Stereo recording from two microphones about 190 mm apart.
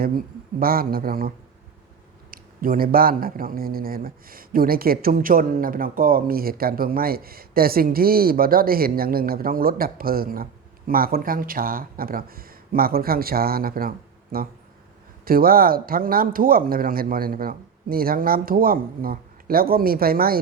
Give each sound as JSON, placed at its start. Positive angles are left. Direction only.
{"t": 0.6, "sound": "speech", "side_deg": -50}
{"t": 2.3, "sound": "speech", "side_deg": -50}